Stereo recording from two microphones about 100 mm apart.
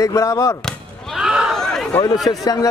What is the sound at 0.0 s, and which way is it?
Speech, 35° left (ahead or behind).